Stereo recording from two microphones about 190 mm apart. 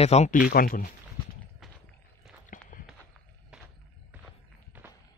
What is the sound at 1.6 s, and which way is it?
Clip-clop, centre (ahead or behind).